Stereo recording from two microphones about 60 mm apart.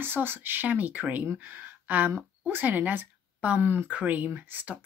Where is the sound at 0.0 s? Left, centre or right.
Right.